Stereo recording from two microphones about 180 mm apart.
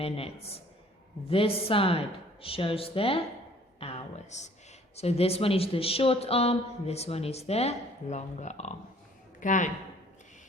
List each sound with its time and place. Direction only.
0.0 s speech: 35° left (ahead or behind)
3.8 s a sound: 30° left (ahead or behind)
4.9 s speech: 35° left (ahead or behind)